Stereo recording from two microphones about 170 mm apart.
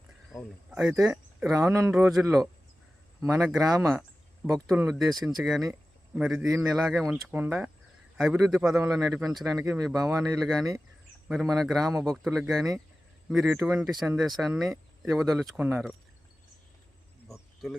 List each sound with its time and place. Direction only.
0.3 s a man's voice: centre (ahead or behind)
0.9 s speech: 15° right (ahead or behind)
4.5 s speech: 10° right (ahead or behind)
5.1 s a man's voice: centre (ahead or behind)
10.1 s speech: 15° right (ahead or behind)
10.4 s a man's voice: centre (ahead or behind)
17.6 s a man's voice: centre (ahead or behind)